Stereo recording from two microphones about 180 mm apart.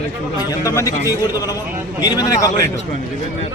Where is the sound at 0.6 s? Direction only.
15° left (ahead or behind).